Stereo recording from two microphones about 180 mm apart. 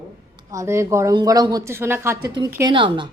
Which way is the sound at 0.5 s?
15° right (ahead or behind).